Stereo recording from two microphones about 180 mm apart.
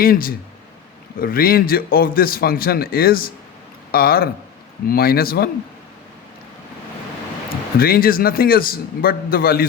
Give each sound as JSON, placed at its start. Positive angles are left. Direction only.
{"t": 0.0, "sound": "a man's voice", "side_deg": 55}
{"t": 7.8, "sound": "a man's voice", "side_deg": 55}